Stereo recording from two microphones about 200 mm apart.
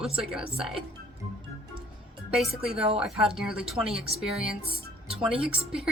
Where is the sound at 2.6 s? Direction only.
5° right (ahead or behind).